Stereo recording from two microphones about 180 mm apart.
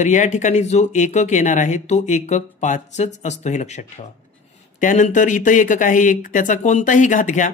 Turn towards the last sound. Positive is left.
turn(degrees=45)  # may be behind; listen again after turning